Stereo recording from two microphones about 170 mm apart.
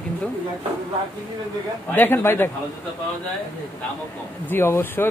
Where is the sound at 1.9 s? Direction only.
10° left (ahead or behind).